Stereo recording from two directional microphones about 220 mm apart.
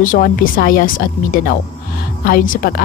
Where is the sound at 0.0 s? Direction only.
40° left (ahead or behind).